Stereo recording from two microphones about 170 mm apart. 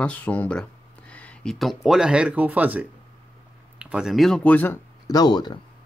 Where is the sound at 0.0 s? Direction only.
10° left (ahead or behind); by 5.6 s 25° left (ahead or behind).